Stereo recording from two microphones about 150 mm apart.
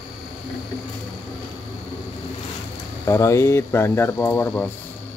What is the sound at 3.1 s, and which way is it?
Speech, 20° left (ahead or behind).